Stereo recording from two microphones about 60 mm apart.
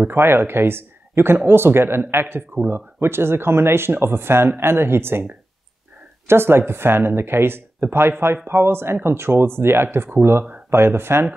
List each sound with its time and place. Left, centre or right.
0.1 s speech: right
6.2 s speech: right